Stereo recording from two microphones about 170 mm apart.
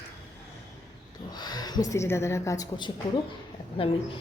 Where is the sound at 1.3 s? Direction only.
25° left (ahead or behind).